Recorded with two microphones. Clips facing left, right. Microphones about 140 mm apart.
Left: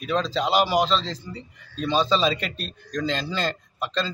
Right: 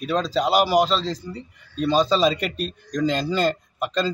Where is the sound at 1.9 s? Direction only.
40° right (ahead or behind).